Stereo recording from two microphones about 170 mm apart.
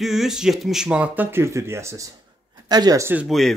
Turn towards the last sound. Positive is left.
turn(degrees=0)  # may be behind; listen again after turning